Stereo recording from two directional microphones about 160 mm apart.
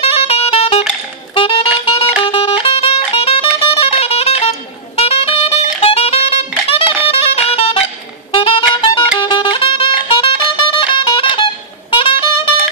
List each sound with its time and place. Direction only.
0.0 s music: 40° left (ahead or behind)